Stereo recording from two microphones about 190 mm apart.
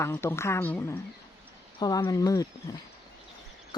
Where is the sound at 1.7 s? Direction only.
25° left (ahead or behind).